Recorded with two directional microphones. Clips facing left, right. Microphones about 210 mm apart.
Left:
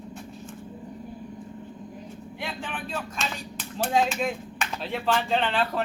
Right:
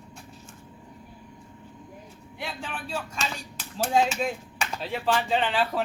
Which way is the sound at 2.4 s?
Centre (ahead or behind).